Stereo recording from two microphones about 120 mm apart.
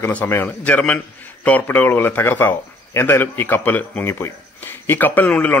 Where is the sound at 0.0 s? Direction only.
15° left (ahead or behind).